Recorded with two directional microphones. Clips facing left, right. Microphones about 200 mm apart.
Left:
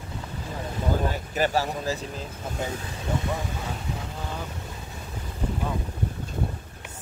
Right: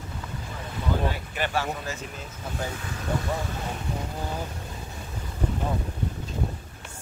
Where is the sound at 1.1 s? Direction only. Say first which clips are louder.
Left 4 dB; 40° left (ahead or behind).